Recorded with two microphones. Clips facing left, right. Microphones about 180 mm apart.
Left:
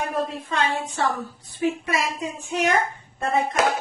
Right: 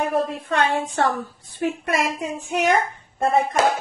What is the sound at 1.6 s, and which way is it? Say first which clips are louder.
Speech: right 1 dB; 55° right (ahead or behind).